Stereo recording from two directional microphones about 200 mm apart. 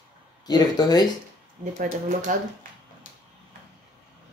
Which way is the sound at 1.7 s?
40° right (ahead or behind).